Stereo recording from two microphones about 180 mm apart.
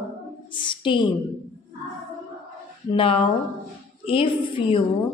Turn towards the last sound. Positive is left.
turn(degrees=30)  # may be behind; listen again after turning